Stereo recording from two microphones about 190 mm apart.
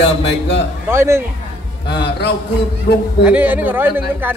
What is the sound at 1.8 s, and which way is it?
Music, 60° left (ahead or behind).